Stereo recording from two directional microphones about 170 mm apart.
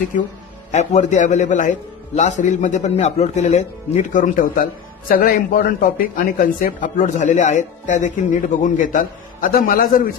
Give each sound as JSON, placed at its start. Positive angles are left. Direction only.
{"t": 0.1, "sound": "speech", "side_deg": 50}